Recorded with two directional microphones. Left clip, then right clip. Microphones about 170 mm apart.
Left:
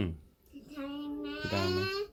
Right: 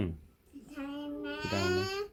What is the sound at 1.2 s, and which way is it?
Babbling, 15° right (ahead or behind).